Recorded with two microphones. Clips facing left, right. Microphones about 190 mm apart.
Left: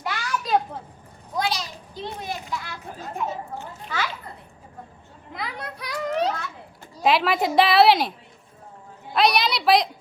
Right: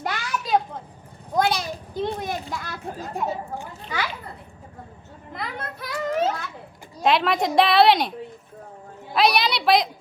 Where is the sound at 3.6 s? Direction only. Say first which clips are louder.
Even; 15° right (ahead or behind).